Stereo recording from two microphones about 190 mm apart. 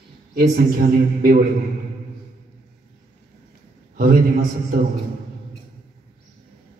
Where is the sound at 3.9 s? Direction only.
50° right (ahead or behind).